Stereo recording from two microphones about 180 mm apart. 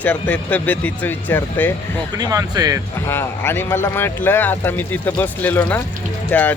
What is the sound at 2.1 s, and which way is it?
Speech, 20° right (ahead or behind).